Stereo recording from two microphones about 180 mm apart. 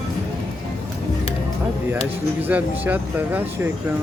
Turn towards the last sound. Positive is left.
turn(degrees=-10)  # may be behind; listen again after turning